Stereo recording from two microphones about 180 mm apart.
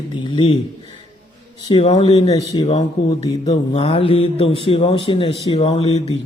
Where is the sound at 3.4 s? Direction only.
35° left (ahead or behind).